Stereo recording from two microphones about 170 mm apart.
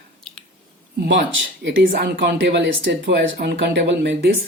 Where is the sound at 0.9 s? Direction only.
70° right (ahead or behind).